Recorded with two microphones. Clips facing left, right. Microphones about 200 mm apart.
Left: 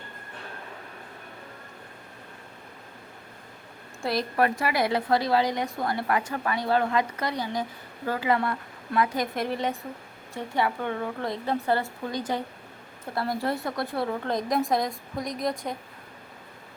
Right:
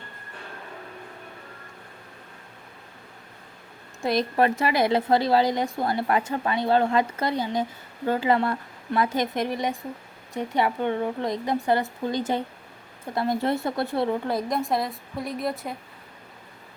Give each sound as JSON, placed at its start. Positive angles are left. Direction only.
{"t": 4.0, "sound": "a woman's voice", "side_deg": -20}
{"t": 14.3, "sound": "a woman's voice", "side_deg": -5}